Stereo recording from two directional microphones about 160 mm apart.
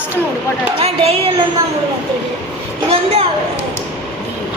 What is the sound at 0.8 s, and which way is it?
Speech, 40° right (ahead or behind).